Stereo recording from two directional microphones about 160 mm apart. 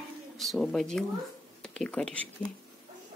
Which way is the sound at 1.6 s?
5° left (ahead or behind).